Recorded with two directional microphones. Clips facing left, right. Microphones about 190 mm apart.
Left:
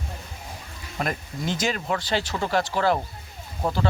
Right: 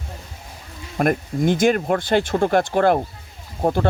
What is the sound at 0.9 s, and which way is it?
Speech, 50° right (ahead or behind).